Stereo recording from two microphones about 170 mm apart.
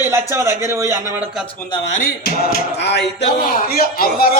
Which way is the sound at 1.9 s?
55° left (ahead or behind).